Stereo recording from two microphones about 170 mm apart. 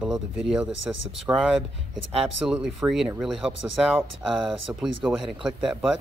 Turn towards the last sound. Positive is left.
turn(degrees=-5)  # may be behind; listen again after turning